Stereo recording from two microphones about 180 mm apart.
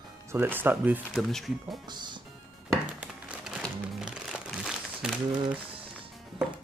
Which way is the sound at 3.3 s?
5° right (ahead or behind).